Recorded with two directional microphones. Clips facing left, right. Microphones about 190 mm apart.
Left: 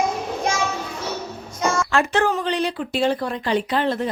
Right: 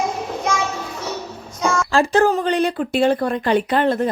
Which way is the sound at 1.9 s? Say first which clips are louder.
Right 7 dB; 35° right (ahead or behind).